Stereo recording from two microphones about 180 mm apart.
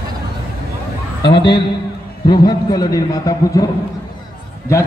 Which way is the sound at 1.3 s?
25° left (ahead or behind).